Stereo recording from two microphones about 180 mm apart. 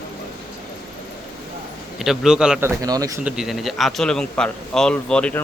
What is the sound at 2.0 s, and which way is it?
A man's voice, 5° right (ahead or behind).